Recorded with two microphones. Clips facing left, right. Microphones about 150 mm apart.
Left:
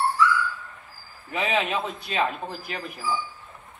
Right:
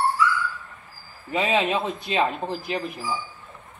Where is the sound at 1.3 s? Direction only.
15° right (ahead or behind).